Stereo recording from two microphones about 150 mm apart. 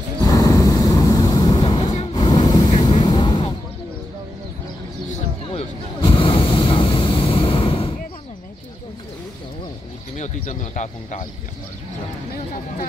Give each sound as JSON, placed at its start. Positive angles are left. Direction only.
{"t": 0.2, "sound": "vehicle", "side_deg": 25}
{"t": 5.5, "sound": "a sound", "side_deg": 40}
{"t": 10.1, "sound": "speech", "side_deg": 55}